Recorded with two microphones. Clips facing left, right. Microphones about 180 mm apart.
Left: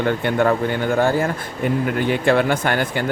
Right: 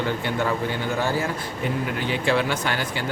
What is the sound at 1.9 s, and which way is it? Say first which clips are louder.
Speech: left 5 dB; 55° left (ahead or behind).